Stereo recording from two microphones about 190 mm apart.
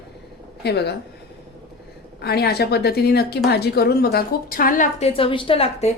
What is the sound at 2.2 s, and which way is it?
A woman's voice, 55° left (ahead or behind).